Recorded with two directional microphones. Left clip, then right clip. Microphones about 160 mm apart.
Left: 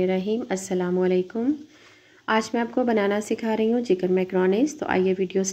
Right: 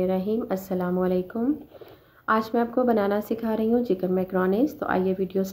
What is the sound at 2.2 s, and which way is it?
Speech, 15° left (ahead or behind).